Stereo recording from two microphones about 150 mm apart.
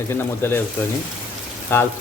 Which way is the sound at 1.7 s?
15° left (ahead or behind).